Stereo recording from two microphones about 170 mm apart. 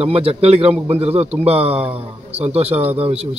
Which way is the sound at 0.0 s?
35° right (ahead or behind).